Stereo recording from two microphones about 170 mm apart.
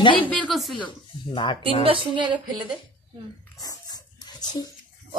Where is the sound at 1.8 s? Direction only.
30° right (ahead or behind).